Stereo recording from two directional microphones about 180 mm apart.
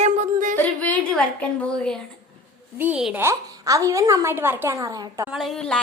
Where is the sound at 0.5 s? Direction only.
10° left (ahead or behind).